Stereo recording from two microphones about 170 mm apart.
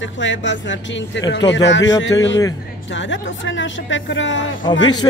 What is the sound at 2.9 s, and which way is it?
Speech, 90° left.